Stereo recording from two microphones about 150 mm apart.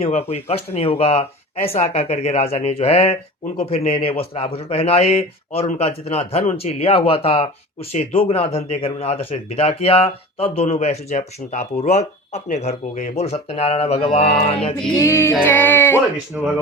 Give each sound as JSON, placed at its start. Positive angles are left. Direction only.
{"t": 0.0, "sound": "a man's voice", "side_deg": 45}
{"t": 14.9, "sound": "music", "side_deg": 20}
{"t": 15.4, "sound": "speech", "side_deg": 15}